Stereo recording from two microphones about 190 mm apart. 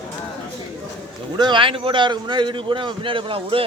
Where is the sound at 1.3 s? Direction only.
25° right (ahead or behind).